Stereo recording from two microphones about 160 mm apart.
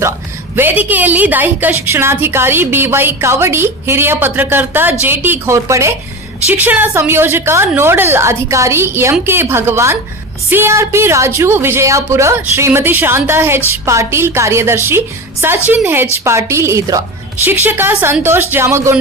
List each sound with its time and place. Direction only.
0.5 s a woman's voice: 10° right (ahead or behind)